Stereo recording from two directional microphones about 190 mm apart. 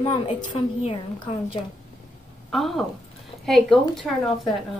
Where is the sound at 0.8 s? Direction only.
25° left (ahead or behind).